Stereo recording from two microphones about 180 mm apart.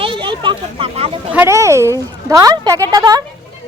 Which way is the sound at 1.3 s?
15° right (ahead or behind).